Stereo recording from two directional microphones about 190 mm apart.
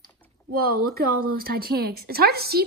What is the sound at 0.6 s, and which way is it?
Speech, 55° right (ahead or behind).